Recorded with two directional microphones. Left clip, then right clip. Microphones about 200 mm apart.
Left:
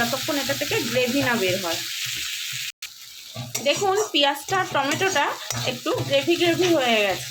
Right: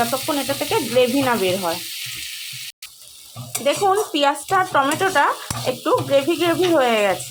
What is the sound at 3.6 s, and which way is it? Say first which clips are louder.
Stir: right 4 dB; 15° right (ahead or behind).